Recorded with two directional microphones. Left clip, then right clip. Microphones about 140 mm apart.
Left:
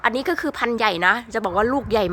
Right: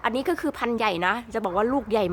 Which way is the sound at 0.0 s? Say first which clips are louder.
Left 4 dB; 5° left (ahead or behind).